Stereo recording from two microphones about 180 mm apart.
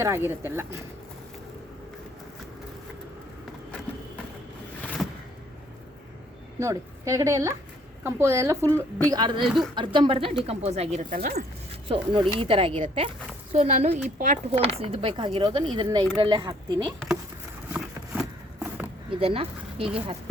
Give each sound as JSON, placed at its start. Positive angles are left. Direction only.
{"t": 0.0, "sound": "a woman's voice", "side_deg": -15}
{"t": 5.0, "sound": "vehicle", "side_deg": 0}
{"t": 6.6, "sound": "a woman's voice", "side_deg": -15}
{"t": 9.4, "sound": "speech", "side_deg": 0}
{"t": 9.7, "sound": "speech", "side_deg": -25}
{"t": 11.1, "sound": "speech", "side_deg": -55}
{"t": 12.4, "sound": "speech", "side_deg": -30}
{"t": 17.7, "sound": "a sound", "side_deg": -10}
{"t": 19.2, "sound": "speech", "side_deg": -30}